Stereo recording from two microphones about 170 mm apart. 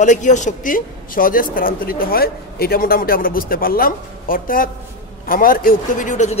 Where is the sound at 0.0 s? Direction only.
45° left (ahead or behind).